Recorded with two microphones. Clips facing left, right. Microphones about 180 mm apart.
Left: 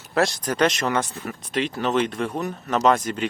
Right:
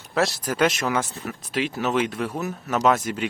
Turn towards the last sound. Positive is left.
turn(degrees=-5)  # may be behind; listen again after turning